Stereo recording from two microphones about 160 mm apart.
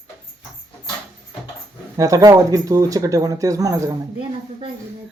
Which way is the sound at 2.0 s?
20° right (ahead or behind).